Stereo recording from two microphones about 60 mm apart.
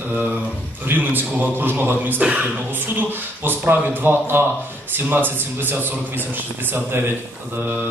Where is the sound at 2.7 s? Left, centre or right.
Right.